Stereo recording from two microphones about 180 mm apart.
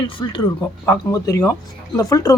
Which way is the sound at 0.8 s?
15° left (ahead or behind).